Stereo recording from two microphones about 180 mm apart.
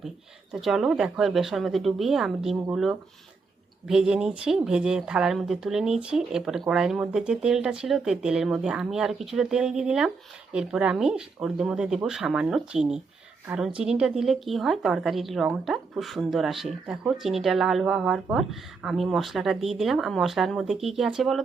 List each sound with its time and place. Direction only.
0.5 s a woman's voice: centre (ahead or behind)